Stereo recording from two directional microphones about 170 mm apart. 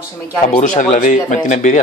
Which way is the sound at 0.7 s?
50° left (ahead or behind).